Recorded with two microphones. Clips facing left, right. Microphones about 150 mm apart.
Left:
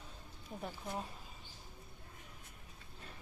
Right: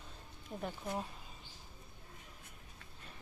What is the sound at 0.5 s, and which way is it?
Speech, centre (ahead or behind).